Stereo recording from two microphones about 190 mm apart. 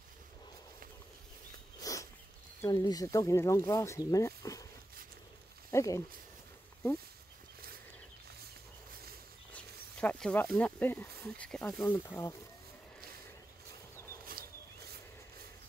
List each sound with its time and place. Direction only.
1.8 s a sound: 15° left (ahead or behind)
2.6 s speech: 20° left (ahead or behind)
5.7 s speech: 15° left (ahead or behind)
9.5 s speech: 5° left (ahead or behind)